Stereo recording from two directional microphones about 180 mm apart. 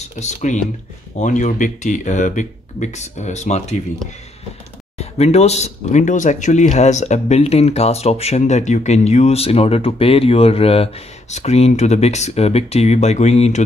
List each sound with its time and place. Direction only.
0.2 s speech: 40° left (ahead or behind)
4.9 s speech: 35° left (ahead or behind)